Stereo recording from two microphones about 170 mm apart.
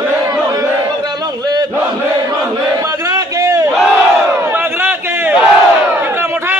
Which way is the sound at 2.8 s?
20° right (ahead or behind).